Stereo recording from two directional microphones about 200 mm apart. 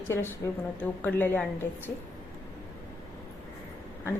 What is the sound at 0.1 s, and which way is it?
A woman's voice, 10° left (ahead or behind).